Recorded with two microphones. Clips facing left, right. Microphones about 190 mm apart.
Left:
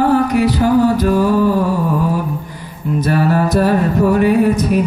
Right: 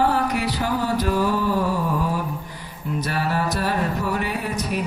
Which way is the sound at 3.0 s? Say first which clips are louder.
Left 10 dB; 50° left (ahead or behind).